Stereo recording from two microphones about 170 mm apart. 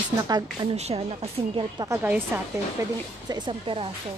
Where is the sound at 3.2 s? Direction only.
25° right (ahead or behind).